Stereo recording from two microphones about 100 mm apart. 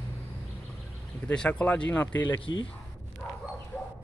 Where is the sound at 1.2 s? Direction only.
10° left (ahead or behind).